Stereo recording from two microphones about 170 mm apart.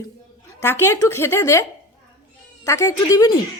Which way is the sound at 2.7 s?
15° left (ahead or behind).